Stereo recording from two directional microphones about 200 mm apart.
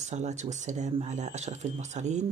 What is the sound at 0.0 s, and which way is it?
Speech, 35° right (ahead or behind).